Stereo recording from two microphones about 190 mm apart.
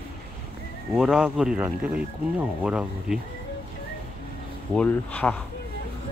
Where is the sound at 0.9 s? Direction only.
5° right (ahead or behind).